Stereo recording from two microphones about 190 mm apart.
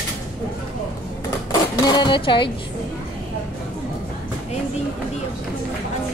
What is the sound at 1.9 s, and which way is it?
Speech, 25° left (ahead or behind).